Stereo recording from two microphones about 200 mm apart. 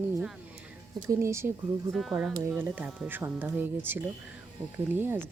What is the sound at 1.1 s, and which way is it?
Speech, 15° right (ahead or behind).